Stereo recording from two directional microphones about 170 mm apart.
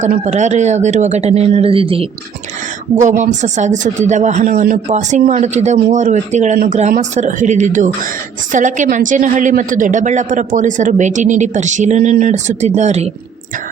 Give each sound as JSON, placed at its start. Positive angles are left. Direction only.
{"t": 0.0, "sound": "a woman's voice", "side_deg": -45}
{"t": 2.9, "sound": "a woman's voice", "side_deg": -45}